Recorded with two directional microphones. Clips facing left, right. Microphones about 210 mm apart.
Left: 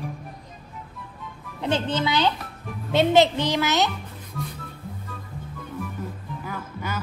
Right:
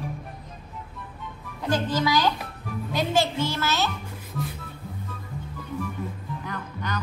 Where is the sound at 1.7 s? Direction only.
25° left (ahead or behind).